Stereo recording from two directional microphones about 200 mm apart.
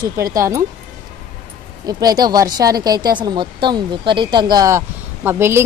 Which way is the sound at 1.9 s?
20° right (ahead or behind).